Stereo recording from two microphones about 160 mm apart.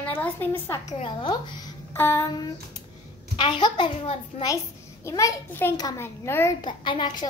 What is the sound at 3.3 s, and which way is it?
A child's voice, 30° left (ahead or behind).